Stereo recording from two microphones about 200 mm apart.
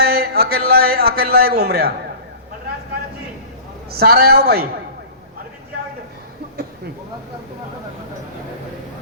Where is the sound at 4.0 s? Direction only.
50° right (ahead or behind).